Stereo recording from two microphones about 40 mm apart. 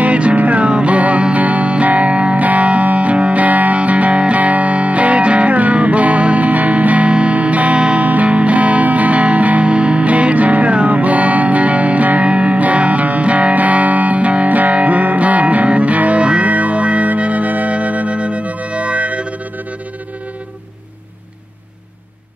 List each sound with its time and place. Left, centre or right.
0.0 s music: right